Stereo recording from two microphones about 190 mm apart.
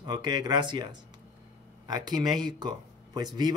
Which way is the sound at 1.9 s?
20° right (ahead or behind).